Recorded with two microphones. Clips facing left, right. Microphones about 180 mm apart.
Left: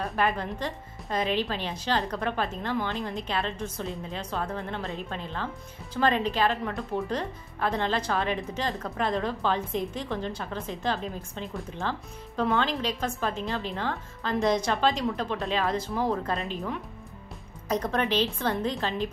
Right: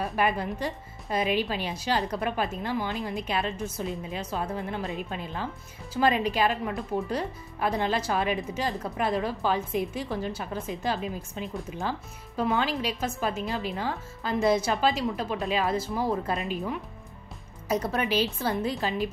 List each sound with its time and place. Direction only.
0.0 s speech: 10° right (ahead or behind)